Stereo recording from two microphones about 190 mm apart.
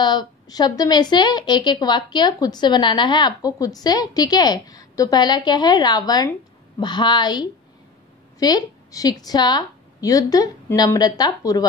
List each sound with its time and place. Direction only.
0.0 s a woman's voice: 25° left (ahead or behind)